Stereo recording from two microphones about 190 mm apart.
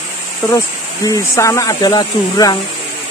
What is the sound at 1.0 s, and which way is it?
Speech, 15° left (ahead or behind).